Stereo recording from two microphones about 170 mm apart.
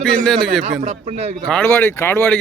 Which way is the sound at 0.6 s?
45° right (ahead or behind).